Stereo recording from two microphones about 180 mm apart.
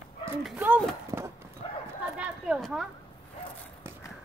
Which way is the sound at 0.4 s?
5° right (ahead or behind).